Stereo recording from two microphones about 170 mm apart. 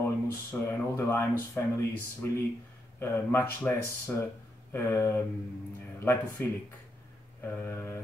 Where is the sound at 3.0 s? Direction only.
15° left (ahead or behind).